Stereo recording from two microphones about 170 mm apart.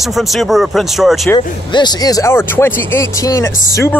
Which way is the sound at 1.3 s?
25° left (ahead or behind).